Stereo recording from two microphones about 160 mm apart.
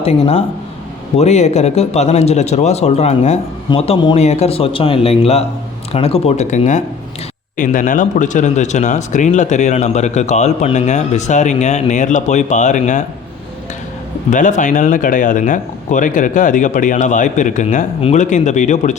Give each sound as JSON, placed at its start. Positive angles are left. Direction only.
{"t": 0.0, "sound": "speech", "side_deg": 35}
{"t": 14.3, "sound": "speech", "side_deg": 50}